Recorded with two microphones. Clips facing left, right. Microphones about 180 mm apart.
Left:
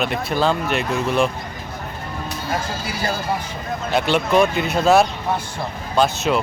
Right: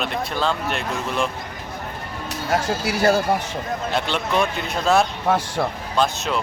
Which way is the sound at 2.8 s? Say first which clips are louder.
Right 7 dB; 70° right (ahead or behind).